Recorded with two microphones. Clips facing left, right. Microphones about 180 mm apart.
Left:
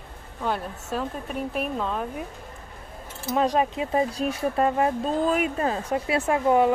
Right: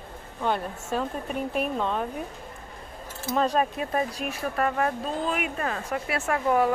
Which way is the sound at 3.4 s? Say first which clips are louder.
Left 2 dB; 15° left (ahead or behind).